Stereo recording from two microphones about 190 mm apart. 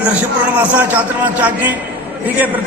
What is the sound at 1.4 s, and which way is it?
Speech, 10° right (ahead or behind).